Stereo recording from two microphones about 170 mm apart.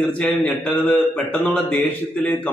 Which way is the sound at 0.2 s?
5° left (ahead or behind).